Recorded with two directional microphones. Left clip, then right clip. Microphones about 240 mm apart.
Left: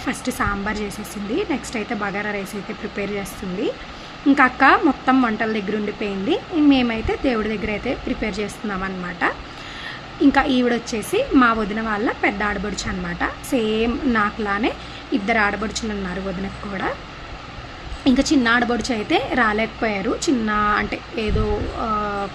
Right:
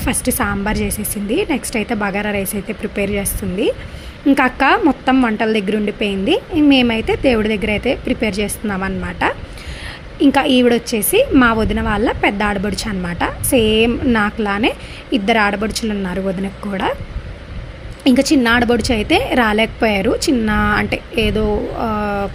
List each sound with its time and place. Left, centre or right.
0.0 s a woman's voice: centre
18.0 s a woman's voice: centre